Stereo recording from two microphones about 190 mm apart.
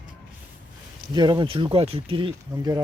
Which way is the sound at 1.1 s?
25° right (ahead or behind).